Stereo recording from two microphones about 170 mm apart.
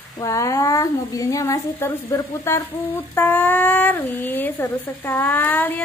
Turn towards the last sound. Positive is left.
turn(degrees=10)  # may be behind; listen again after turning